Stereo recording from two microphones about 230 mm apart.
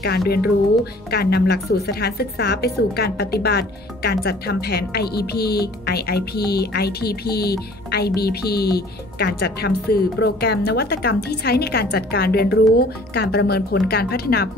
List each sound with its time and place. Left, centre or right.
1.1 s speech: left